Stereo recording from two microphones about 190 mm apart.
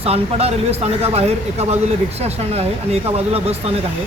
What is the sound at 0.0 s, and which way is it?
Speech, 30° right (ahead or behind).